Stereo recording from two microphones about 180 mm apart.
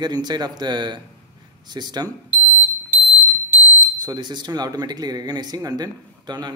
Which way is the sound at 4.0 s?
25° right (ahead or behind).